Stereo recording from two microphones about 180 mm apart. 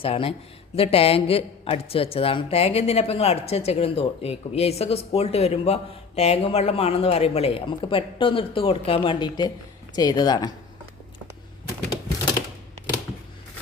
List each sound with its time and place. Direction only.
0.0 s a woman's voice: 30° left (ahead or behind)